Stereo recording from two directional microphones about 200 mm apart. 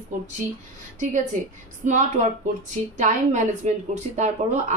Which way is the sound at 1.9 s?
35° right (ahead or behind).